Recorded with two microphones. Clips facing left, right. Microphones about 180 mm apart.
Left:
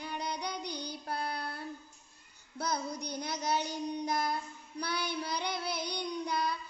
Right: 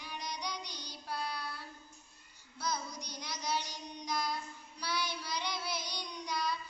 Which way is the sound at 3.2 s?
55° left (ahead or behind).